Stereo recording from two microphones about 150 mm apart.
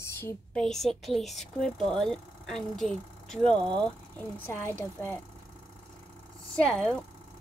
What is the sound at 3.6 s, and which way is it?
Speech, 30° right (ahead or behind).